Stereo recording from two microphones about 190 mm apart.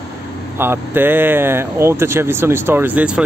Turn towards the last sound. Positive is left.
turn(degrees=-5)  # may be behind; listen again after turning